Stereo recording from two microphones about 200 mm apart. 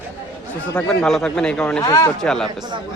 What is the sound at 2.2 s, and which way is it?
Speech, 5° left (ahead or behind).